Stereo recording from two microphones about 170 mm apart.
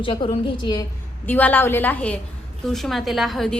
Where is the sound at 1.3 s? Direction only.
10° left (ahead or behind).